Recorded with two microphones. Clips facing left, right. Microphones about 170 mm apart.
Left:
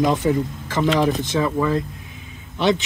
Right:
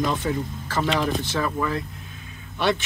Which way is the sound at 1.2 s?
20° left (ahead or behind).